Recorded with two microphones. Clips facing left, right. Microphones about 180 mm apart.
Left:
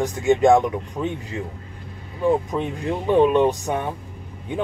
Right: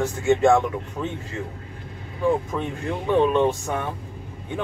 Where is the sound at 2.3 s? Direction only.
20° left (ahead or behind).